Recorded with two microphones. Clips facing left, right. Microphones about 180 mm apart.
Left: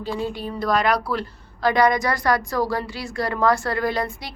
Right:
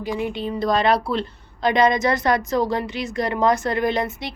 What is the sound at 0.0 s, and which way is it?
A woman's voice, 15° right (ahead or behind).